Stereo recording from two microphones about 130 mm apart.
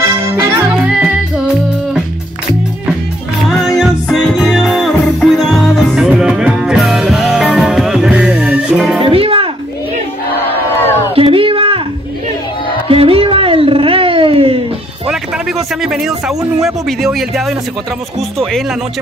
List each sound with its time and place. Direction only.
0.1 s music: 20° right (ahead or behind)
0.7 s music: 5° right (ahead or behind)
3.4 s music: centre (ahead or behind)
9.0 s music: 45° right (ahead or behind)
11.1 s a sound: 45° right (ahead or behind)
12.8 s cat: 45° right (ahead or behind)
15.8 s a sound: 5° right (ahead or behind)
16.3 s speech: 5° right (ahead or behind)